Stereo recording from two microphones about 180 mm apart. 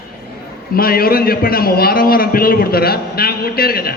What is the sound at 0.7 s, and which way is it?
A man's voice, 55° left (ahead or behind).